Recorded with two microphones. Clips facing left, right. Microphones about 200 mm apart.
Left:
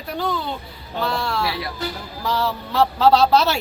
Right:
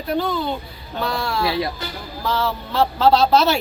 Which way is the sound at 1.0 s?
Centre (ahead or behind).